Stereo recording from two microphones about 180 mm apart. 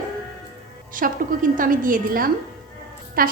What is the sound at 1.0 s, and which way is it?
A woman's voice, 55° right (ahead or behind).